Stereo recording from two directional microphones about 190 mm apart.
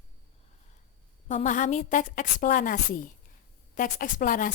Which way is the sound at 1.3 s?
40° left (ahead or behind).